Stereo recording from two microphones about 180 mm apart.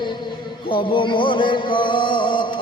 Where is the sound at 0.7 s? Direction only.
25° left (ahead or behind).